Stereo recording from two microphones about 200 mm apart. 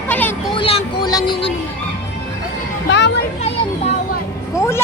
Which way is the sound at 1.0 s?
20° left (ahead or behind).